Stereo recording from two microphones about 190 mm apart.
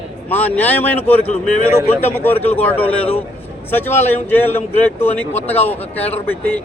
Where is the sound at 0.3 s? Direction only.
10° left (ahead or behind).